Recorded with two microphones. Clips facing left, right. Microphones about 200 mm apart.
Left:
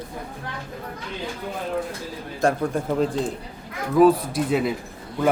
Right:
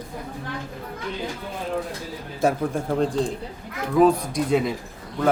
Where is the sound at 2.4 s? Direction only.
5° right (ahead or behind).